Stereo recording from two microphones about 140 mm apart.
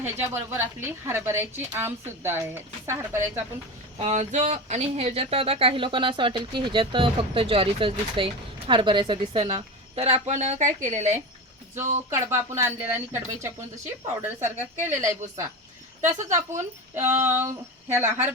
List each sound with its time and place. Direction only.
0.0 s a woman's voice: 15° right (ahead or behind)
3.9 s speech: 50° right (ahead or behind)
12.1 s a woman's voice: 20° right (ahead or behind)
16.9 s a woman's voice: 20° right (ahead or behind)